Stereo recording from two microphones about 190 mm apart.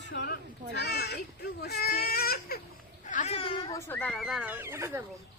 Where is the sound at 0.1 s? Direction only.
65° left (ahead or behind).